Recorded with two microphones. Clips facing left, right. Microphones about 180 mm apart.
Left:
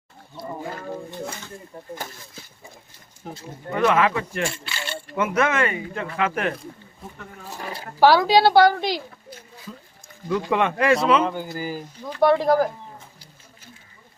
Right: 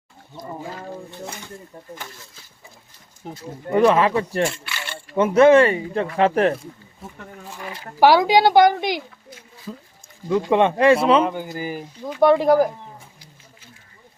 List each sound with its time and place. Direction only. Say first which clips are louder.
3.7 s speech: right 4 dB; 30° right (ahead or behind)
4.6 s speech: left 1 dB; 25° left (ahead or behind)
5.1 s speech: right 10 dB; 30° right (ahead or behind)
7.4 s a sound: left 2 dB; 40° left (ahead or behind)
8.0 s speech: right 1 dB; 15° right (ahead or behind)
10.2 s speech: right 4 dB; 25° right (ahead or behind)
11.2 s speech: right 1 dB; 20° right (ahead or behind)